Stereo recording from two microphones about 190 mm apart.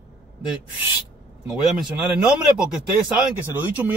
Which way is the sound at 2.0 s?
5° right (ahead or behind).